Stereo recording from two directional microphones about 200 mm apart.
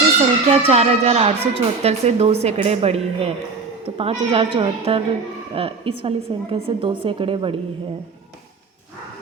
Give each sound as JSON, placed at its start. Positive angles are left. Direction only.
{"t": 0.2, "sound": "a woman's voice", "side_deg": -30}